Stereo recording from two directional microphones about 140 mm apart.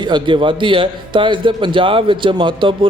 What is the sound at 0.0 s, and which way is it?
A man's voice, 35° right (ahead or behind).